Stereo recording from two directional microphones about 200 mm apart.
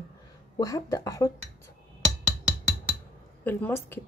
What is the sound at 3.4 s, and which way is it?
Speech, 10° left (ahead or behind).